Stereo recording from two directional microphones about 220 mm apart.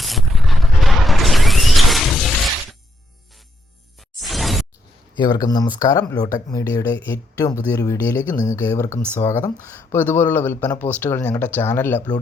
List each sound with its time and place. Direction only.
0.0 s a sound: centre (ahead or behind)
4.2 s shatter: centre (ahead or behind)
5.1 s speech: 20° left (ahead or behind)